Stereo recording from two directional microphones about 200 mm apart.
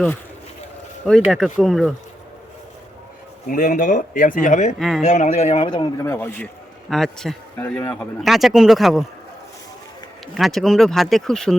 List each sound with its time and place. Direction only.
1.0 s speech: centre (ahead or behind)
3.5 s speech: 45° left (ahead or behind)
4.8 s speech: centre (ahead or behind)
5.0 s speech: 35° left (ahead or behind)
6.0 s speech: 10° left (ahead or behind)
10.3 s speech: centre (ahead or behind)